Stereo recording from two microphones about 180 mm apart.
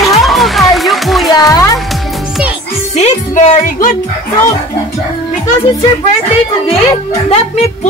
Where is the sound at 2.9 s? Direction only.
40° left (ahead or behind).